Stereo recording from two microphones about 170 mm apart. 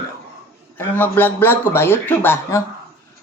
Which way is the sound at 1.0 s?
10° left (ahead or behind).